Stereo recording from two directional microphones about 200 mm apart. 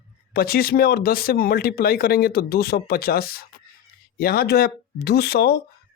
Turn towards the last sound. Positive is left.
turn(degrees=55)  # may be behind; listen again after turning